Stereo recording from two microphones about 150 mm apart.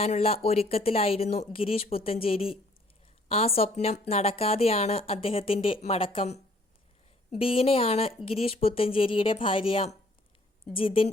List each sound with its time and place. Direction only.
0.0 s speech: 40° left (ahead or behind)